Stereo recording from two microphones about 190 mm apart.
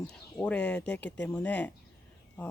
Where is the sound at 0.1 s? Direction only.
5° left (ahead or behind).